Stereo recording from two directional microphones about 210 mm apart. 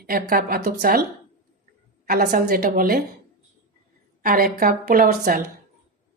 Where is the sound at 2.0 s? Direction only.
45° right (ahead or behind).